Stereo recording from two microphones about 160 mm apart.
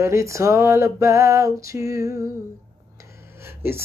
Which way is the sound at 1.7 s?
20° right (ahead or behind).